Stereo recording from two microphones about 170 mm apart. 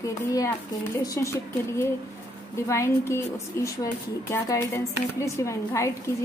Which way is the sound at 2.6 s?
15° left (ahead or behind).